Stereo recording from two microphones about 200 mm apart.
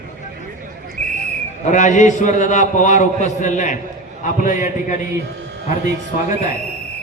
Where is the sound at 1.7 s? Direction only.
35° left (ahead or behind).